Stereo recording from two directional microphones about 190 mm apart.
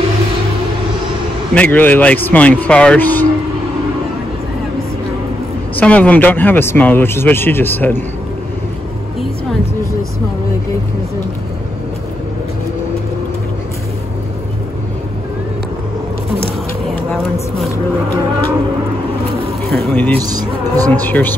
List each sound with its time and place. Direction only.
1.5 s speech: 10° left (ahead or behind)
5.8 s speech: 5° left (ahead or behind)
17.6 s a sound: 10° left (ahead or behind)
19.7 s a sound: 10° left (ahead or behind)
20.2 s speech: 20° right (ahead or behind)
21.0 s speech: 10° left (ahead or behind)